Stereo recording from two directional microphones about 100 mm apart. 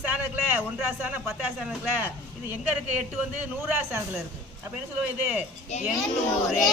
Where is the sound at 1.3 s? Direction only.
5° right (ahead or behind).